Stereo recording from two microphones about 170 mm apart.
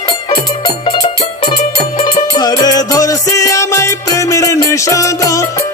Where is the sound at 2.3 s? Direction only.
25° left (ahead or behind).